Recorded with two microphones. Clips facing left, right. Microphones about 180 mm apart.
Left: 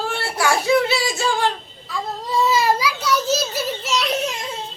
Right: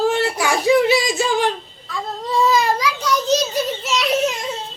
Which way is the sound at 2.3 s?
Centre (ahead or behind).